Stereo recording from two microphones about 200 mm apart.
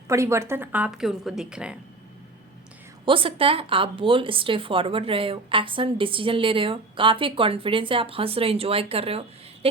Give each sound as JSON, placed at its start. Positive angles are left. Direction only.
{"t": 0.1, "sound": "a woman's voice", "side_deg": -15}
{"t": 3.1, "sound": "speech", "side_deg": -25}